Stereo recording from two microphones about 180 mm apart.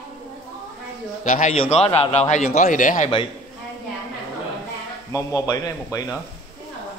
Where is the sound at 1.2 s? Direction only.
45° left (ahead or behind).